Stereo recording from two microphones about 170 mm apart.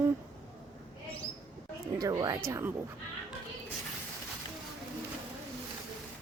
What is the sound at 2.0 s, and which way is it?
Speech, 20° right (ahead or behind).